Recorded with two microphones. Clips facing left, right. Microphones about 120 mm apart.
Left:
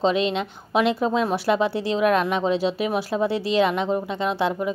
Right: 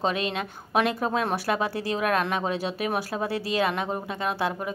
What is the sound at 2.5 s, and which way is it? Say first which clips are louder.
Speech: left 5 dB; 45° right (ahead or behind).